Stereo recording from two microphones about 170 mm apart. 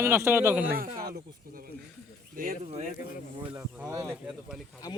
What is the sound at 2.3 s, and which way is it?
Speech, 55° right (ahead or behind).